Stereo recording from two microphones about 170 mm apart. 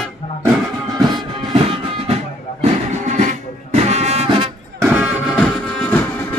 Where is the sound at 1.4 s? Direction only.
30° right (ahead or behind).